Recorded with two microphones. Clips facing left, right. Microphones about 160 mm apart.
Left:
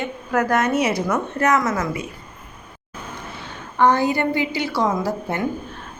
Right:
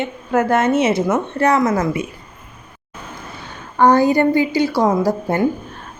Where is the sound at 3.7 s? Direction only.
45° right (ahead or behind).